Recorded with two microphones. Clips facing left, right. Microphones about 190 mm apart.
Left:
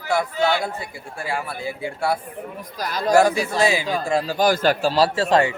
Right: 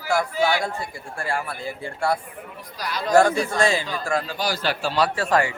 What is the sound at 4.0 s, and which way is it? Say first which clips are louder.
Speech: left 3 dB; 25° left (ahead or behind).